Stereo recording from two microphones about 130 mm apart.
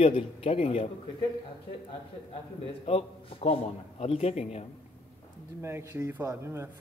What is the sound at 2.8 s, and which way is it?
A man's voice, 50° left (ahead or behind).